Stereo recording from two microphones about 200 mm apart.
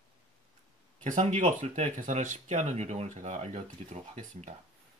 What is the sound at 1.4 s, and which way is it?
Speech, 40° right (ahead or behind).